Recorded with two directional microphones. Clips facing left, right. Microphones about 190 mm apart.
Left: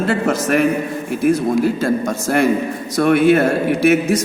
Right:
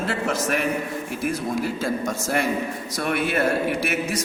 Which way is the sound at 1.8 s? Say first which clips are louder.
Left 7 dB; 55° left (ahead or behind).